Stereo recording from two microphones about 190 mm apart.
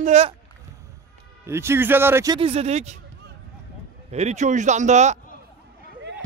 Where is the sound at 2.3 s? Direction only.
30° right (ahead or behind).